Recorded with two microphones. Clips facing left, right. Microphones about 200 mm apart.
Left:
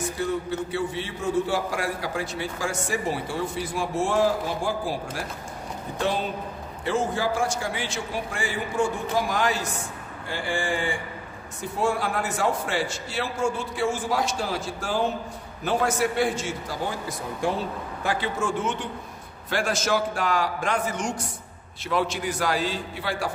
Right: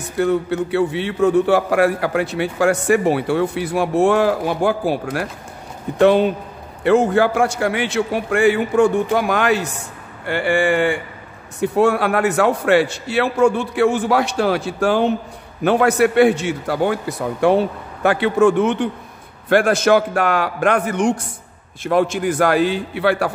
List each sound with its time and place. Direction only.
0.2 s a man's voice: 65° right (ahead or behind)
5.9 s a man's voice: 65° right (ahead or behind)
21.8 s a man's voice: 50° right (ahead or behind)